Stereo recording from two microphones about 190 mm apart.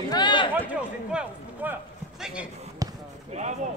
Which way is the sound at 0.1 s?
25° left (ahead or behind).